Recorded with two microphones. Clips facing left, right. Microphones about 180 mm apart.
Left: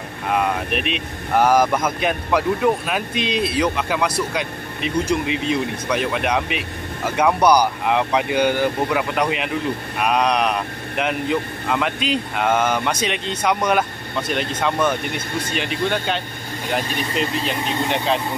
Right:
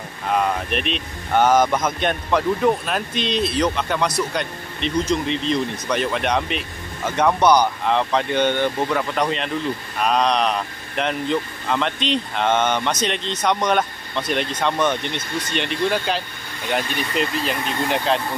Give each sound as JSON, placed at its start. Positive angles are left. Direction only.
{"t": 0.3, "sound": "speech", "side_deg": 5}